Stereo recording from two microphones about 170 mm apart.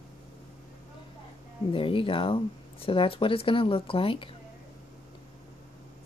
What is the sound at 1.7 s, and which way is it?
Speech, 30° left (ahead or behind).